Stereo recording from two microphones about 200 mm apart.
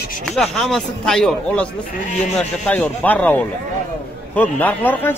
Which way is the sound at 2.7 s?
10° left (ahead or behind).